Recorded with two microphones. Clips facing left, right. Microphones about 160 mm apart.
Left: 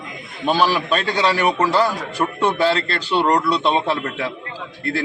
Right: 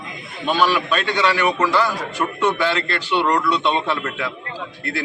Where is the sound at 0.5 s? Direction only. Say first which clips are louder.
Even; 35° left (ahead or behind).